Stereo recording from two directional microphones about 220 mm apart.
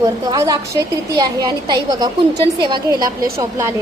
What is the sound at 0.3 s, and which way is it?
A woman's voice, 15° right (ahead or behind).